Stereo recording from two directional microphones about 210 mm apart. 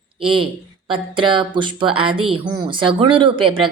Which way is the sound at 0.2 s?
25° right (ahead or behind).